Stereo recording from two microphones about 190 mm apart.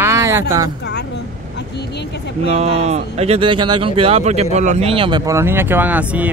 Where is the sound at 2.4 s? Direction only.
35° right (ahead or behind); by 6.3 s 10° right (ahead or behind).